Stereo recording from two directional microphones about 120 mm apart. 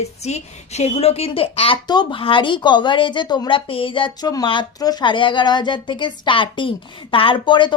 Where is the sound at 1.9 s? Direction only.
40° left (ahead or behind).